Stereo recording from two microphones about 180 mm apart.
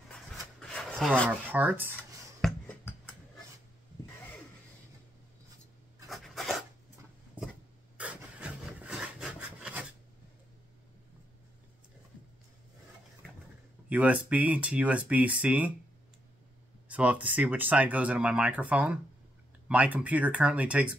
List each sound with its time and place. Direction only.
0.3 s rub: 5° left (ahead or behind)
1.5 s speech: 10° right (ahead or behind)
2.4 s a sound: centre (ahead or behind)
6.0 s a sound: centre (ahead or behind)
8.0 s wood: 5° right (ahead or behind)
13.8 s speech: 5° right (ahead or behind)
16.8 s speech: 5° right (ahead or behind)